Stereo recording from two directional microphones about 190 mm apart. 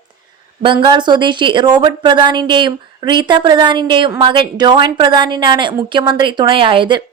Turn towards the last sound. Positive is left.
turn(degrees=-25)  # may be behind; listen again after turning